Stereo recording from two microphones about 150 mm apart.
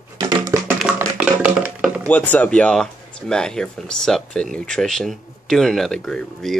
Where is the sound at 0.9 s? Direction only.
10° right (ahead or behind).